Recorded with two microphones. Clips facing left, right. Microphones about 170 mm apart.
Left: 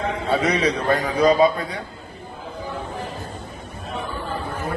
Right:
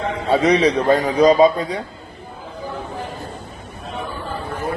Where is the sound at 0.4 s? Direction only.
30° right (ahead or behind).